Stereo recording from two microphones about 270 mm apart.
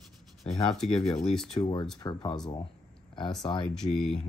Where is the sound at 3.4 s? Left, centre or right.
Centre.